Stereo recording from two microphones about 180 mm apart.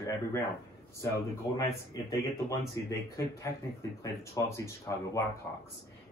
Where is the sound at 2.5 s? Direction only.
15° left (ahead or behind).